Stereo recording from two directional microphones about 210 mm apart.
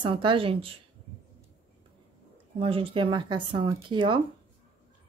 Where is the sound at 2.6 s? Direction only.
25° right (ahead or behind).